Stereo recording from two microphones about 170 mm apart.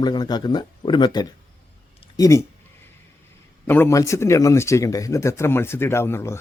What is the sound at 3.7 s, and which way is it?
Speech, 15° left (ahead or behind).